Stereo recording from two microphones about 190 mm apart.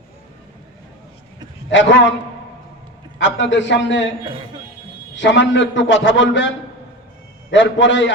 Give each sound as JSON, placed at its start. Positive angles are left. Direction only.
{"t": 1.7, "sound": "a man's voice", "side_deg": 75}
{"t": 3.2, "sound": "a man's voice", "side_deg": 70}
{"t": 5.1, "sound": "a man's voice", "side_deg": 75}
{"t": 7.5, "sound": "a man's voice", "side_deg": 75}